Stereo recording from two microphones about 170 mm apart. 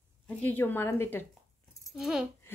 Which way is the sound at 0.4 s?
10° left (ahead or behind).